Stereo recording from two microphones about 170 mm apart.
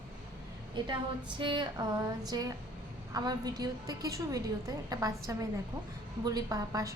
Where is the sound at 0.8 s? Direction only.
30° right (ahead or behind).